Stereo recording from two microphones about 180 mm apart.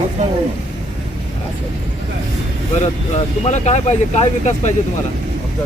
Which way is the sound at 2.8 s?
40° left (ahead or behind).